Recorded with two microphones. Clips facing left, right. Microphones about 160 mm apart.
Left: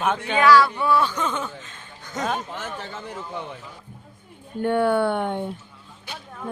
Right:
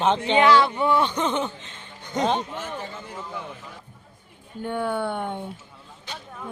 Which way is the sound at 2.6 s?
85° left.